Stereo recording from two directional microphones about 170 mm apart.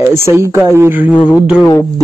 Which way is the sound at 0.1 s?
15° right (ahead or behind).